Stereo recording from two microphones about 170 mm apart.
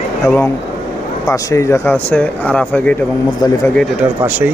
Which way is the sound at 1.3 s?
15° left (ahead or behind).